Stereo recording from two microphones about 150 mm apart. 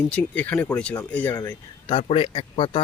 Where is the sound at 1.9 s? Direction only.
40° left (ahead or behind).